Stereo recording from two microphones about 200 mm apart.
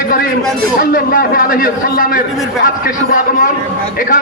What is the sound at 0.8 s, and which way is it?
A man's voice, 45° left (ahead or behind).